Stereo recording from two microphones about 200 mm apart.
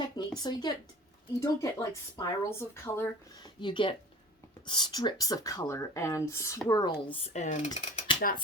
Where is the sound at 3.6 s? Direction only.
25° left (ahead or behind).